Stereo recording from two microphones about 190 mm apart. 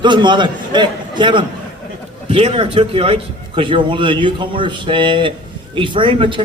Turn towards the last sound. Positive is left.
turn(degrees=-25)  # may be behind; listen again after turning